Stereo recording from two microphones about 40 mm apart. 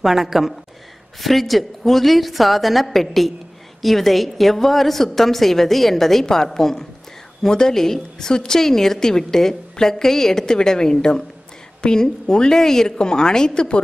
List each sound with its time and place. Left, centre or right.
0.0 s a woman's voice: centre